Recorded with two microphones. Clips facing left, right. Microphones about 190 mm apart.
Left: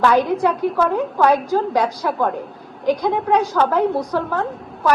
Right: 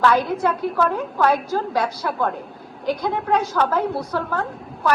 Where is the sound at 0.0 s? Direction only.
15° left (ahead or behind).